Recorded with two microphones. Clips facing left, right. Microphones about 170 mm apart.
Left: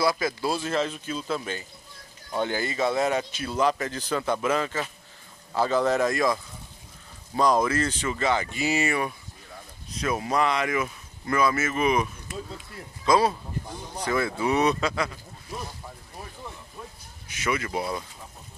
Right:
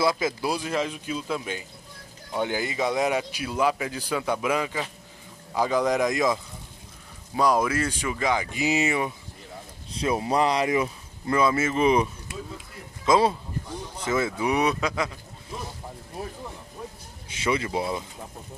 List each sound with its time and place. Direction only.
0.0 s a man's voice: 20° right (ahead or behind)
9.8 s a man's voice: 30° right (ahead or behind); by 15.0 s 15° right (ahead or behind)
17.3 s speech: 30° right (ahead or behind)